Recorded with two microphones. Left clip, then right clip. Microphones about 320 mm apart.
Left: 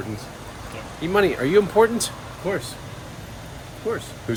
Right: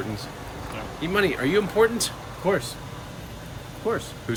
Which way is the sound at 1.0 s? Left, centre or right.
Centre.